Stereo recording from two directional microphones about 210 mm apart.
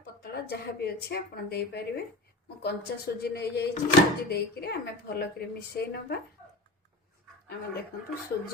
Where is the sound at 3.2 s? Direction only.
50° left (ahead or behind).